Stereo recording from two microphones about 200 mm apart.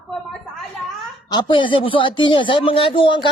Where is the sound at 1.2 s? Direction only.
20° left (ahead or behind).